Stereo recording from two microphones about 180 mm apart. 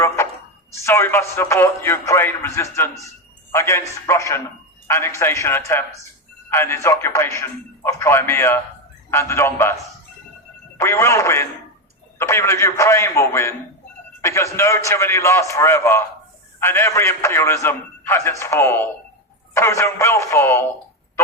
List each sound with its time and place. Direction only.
0.7 s a man's voice: 15° left (ahead or behind)
10.8 s a man's voice: 15° left (ahead or behind)